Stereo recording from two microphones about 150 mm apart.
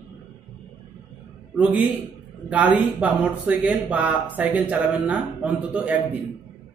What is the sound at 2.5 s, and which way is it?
A man's voice, 10° right (ahead or behind).